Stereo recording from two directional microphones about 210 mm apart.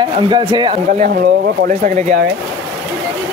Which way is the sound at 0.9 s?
40° right (ahead or behind).